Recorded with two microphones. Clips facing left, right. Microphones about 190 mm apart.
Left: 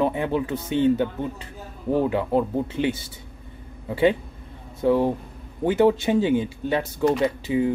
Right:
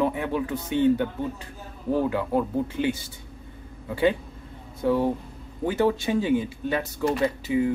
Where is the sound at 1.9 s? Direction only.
20° left (ahead or behind).